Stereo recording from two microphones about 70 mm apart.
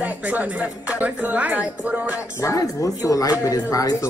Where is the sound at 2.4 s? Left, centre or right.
Left.